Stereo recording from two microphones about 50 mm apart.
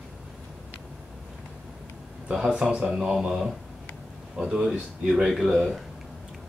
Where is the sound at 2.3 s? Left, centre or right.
Centre.